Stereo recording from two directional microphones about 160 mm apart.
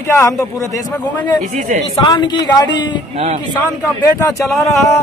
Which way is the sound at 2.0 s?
30° left (ahead or behind).